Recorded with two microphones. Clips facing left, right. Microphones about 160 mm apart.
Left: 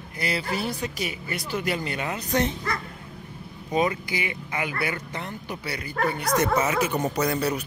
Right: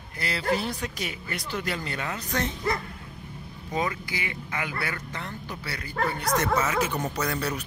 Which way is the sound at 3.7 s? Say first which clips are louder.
Left 5 dB; 20° left (ahead or behind).